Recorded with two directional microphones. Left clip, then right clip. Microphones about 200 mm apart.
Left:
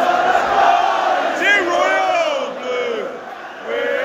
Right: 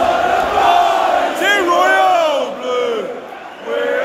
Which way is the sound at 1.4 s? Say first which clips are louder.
Right 2 dB; 30° right (ahead or behind).